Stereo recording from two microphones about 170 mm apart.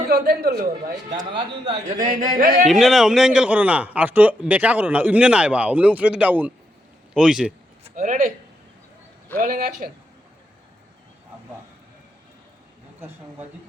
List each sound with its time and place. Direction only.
0.1 s a man's voice: 65° right (ahead or behind)
2.0 s speech: 45° right (ahead or behind)
2.6 s a man's voice: centre (ahead or behind)
7.9 s a man's voice: 45° right (ahead or behind)
9.4 s a man's voice: 55° right (ahead or behind)